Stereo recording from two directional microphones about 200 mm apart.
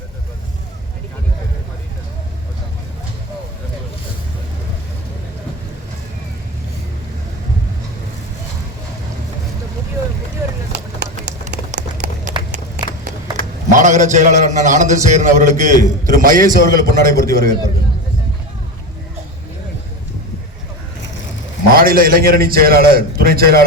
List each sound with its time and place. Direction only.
11.7 s run: 40° right (ahead or behind)
13.7 s a man's voice: 40° right (ahead or behind)
21.7 s a man's voice: 45° right (ahead or behind)